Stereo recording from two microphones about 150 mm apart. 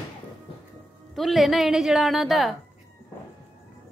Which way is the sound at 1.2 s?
Centre (ahead or behind).